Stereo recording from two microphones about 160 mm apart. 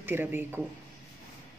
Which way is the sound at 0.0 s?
15° right (ahead or behind).